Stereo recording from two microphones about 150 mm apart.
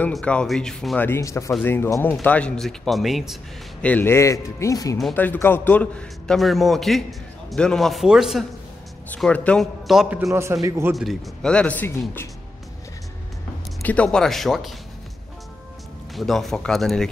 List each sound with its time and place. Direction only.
0.1 s a man's voice: 5° left (ahead or behind)
1.0 s a man's voice: 15° left (ahead or behind); by 3.3 s centre (ahead or behind)
3.8 s a man's voice: 10° left (ahead or behind)
9.1 s a man's voice: 10° left (ahead or behind); by 11.0 s 20° right (ahead or behind)
11.0 s speech: 5° left (ahead or behind)
13.8 s a man's voice: 5° left (ahead or behind)
16.2 s a man's voice: centre (ahead or behind)